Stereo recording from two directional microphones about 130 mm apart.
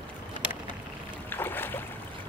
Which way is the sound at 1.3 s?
15° left (ahead or behind).